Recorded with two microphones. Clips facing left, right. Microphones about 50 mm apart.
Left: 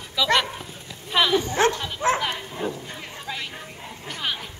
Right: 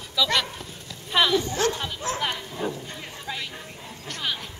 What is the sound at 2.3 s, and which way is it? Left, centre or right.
Bow-wow, centre.